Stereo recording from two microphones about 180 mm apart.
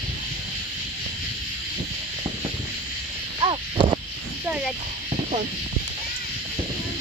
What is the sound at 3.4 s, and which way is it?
Owl, 25° right (ahead or behind).